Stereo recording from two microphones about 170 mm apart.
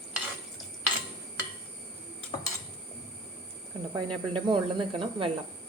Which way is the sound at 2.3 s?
30° left (ahead or behind).